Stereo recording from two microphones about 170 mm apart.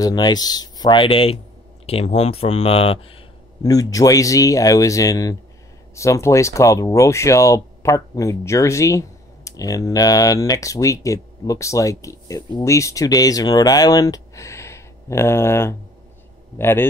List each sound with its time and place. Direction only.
0.0 s speech: 25° left (ahead or behind)
3.6 s speech: 20° left (ahead or behind)